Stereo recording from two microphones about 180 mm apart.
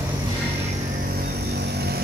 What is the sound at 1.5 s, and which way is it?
Vehicle, 65° right (ahead or behind).